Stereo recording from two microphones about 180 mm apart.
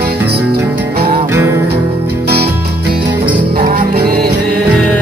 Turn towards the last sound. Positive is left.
turn(degrees=-55)  # may be behind; listen again after turning